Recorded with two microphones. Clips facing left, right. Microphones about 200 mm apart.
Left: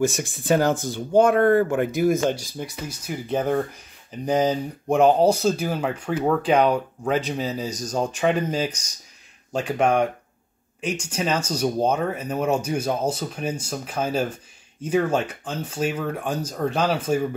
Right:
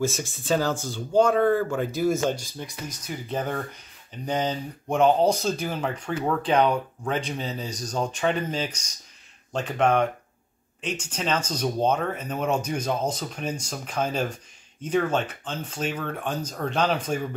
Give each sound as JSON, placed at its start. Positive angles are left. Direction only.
{"t": 0.7, "sound": "speech", "side_deg": 15}
{"t": 1.3, "sound": "speech", "side_deg": 60}
{"t": 2.1, "sound": "speech", "side_deg": 10}